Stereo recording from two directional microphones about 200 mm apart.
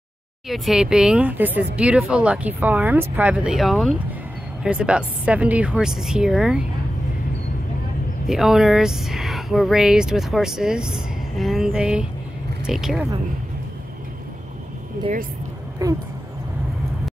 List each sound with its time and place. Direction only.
0.5 s speech: centre (ahead or behind)
8.3 s speech: centre (ahead or behind)
15.8 s speech: 15° right (ahead or behind)